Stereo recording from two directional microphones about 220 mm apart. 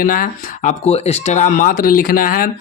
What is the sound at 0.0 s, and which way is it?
Speech, 40° left (ahead or behind).